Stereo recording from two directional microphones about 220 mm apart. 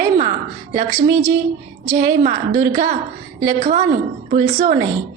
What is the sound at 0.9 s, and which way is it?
Speech, 15° right (ahead or behind).